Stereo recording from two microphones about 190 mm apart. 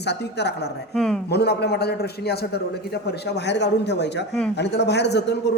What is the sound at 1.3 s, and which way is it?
A man's voice, 60° left (ahead or behind).